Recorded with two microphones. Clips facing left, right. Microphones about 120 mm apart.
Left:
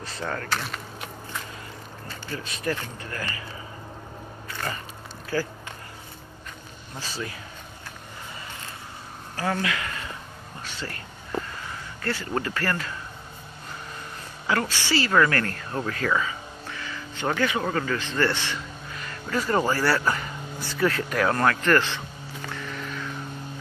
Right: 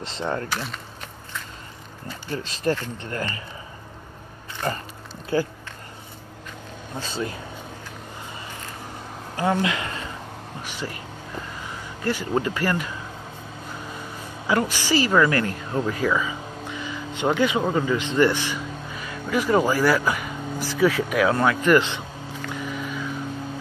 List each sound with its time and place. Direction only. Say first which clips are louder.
0.0 s speech: right 4 dB; 25° right (ahead or behind)
2.3 s speech: right 5 dB; 30° right (ahead or behind)
5.3 s speech: right 4 dB; 20° right (ahead or behind)
7.0 s speech: right 5 dB; 25° right (ahead or behind)
9.4 s speech: right 4 dB; 25° right (ahead or behind)
10.6 s speech: right 3 dB; 15° right (ahead or behind)
12.0 s speech: right 5 dB; 15° right (ahead or behind)
14.5 s a man's voice: right 3 dB; 15° right (ahead or behind)
22.5 s music: right 5 dB; 10° right (ahead or behind)